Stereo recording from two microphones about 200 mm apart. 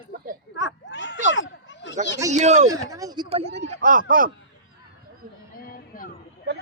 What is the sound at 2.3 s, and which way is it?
Speech, 35° right (ahead or behind).